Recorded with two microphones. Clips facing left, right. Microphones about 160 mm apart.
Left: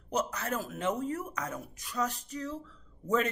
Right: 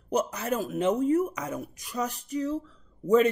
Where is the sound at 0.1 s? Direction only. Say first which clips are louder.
Right 5 dB; 15° right (ahead or behind).